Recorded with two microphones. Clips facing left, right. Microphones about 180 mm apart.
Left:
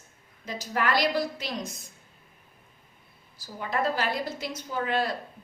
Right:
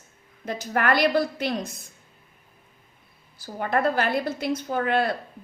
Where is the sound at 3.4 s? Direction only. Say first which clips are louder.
Right 5 dB; 55° right (ahead or behind).